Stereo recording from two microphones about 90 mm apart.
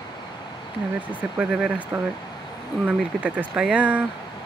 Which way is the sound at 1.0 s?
20° right (ahead or behind).